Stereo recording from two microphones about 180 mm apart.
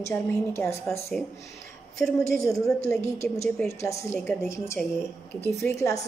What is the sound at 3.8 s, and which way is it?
A woman's voice, 15° left (ahead or behind).